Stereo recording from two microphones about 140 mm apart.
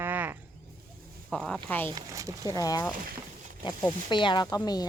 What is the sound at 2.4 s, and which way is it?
Speech, 25° left (ahead or behind).